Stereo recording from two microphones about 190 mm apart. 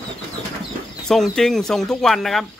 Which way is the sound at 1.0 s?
Centre (ahead or behind).